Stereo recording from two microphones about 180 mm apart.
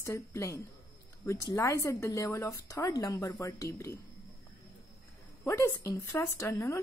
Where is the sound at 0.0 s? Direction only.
15° left (ahead or behind).